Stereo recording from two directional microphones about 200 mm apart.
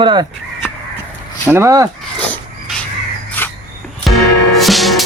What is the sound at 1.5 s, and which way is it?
Speech, 15° right (ahead or behind).